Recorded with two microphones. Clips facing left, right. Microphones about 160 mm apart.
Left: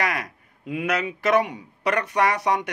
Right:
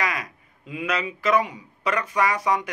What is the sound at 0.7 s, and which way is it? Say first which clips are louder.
Speech: left 2 dB; 65° left (ahead or behind).